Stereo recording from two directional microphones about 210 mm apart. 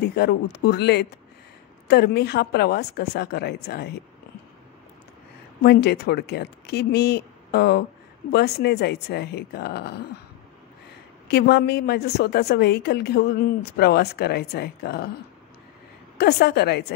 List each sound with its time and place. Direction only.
0.0 s speech: 50° left (ahead or behind)
5.6 s speech: 50° left (ahead or behind)
11.2 s speech: 50° left (ahead or behind)
16.2 s speech: 50° left (ahead or behind)